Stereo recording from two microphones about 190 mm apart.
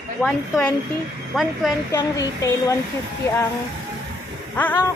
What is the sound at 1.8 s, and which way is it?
Speech, 20° left (ahead or behind).